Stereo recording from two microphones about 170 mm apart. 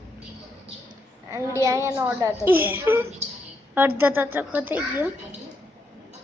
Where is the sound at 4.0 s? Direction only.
10° right (ahead or behind).